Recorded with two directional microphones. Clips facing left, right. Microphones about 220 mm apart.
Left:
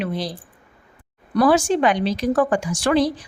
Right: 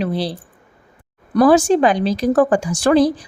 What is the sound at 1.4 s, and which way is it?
Speech, 40° right (ahead or behind).